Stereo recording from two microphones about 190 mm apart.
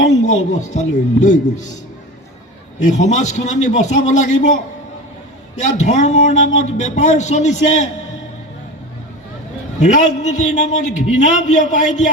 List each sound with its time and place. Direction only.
0.0 s a man's voice: 35° left (ahead or behind)
2.8 s a man's voice: 40° left (ahead or behind)
9.8 s a man's voice: 40° left (ahead or behind)